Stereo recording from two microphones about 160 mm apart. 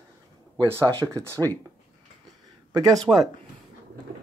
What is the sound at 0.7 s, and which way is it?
Speech, 20° right (ahead or behind).